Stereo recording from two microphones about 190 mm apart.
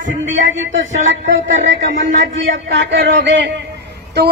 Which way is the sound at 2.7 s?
70° right (ahead or behind).